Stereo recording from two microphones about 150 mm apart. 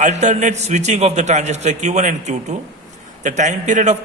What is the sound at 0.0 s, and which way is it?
A man's voice, 55° right (ahead or behind).